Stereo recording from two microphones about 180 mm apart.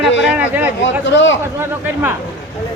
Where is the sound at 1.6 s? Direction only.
10° right (ahead or behind).